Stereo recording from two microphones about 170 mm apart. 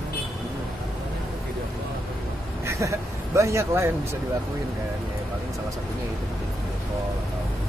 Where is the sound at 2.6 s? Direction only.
15° right (ahead or behind).